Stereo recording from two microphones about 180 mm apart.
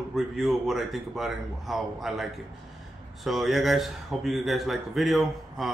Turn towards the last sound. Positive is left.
turn(degrees=0)  # may be behind; listen again after turning